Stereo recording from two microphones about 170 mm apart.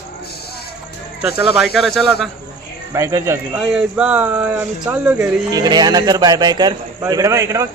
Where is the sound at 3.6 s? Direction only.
5° right (ahead or behind).